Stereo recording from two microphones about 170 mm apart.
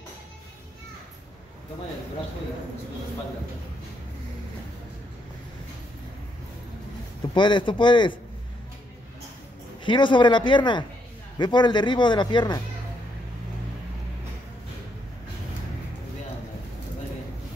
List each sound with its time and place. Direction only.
7.3 s speech: 30° left (ahead or behind)
9.8 s speech: 30° left (ahead or behind)